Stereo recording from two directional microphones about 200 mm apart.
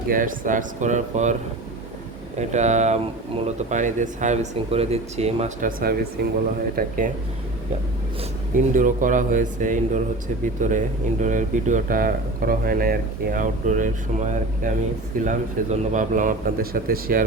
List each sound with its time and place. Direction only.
0.1 s speech: 40° right (ahead or behind)
2.4 s speech: 35° right (ahead or behind)
8.7 s speech: 40° right (ahead or behind)